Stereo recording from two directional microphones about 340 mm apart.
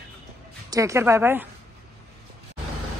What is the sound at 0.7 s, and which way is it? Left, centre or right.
Speech, centre.